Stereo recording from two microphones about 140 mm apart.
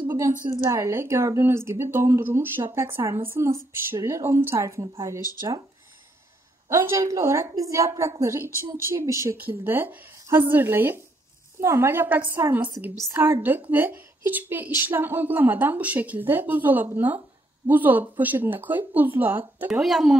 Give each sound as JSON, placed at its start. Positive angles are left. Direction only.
{"t": 0.7, "sound": "speech", "side_deg": -20}
{"t": 6.7, "sound": "a woman's voice", "side_deg": -20}
{"t": 19.7, "sound": "speech", "side_deg": 0}